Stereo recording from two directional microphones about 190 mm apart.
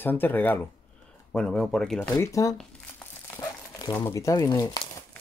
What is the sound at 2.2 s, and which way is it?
Speech, 15° left (ahead or behind).